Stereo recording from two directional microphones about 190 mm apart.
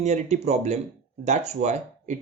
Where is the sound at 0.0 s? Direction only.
35° right (ahead or behind).